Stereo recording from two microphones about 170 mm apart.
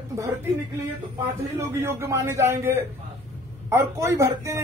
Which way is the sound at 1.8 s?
15° right (ahead or behind).